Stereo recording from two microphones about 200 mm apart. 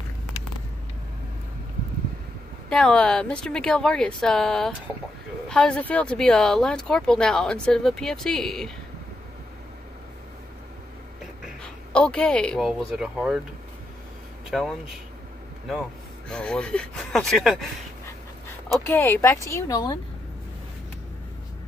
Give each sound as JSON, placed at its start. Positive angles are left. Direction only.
{"t": 2.7, "sound": "speech", "side_deg": 5}
{"t": 11.6, "sound": "speech", "side_deg": 5}
{"t": 14.5, "sound": "speech", "side_deg": 0}
{"t": 16.3, "sound": "speech", "side_deg": 5}
{"t": 18.9, "sound": "speech", "side_deg": 10}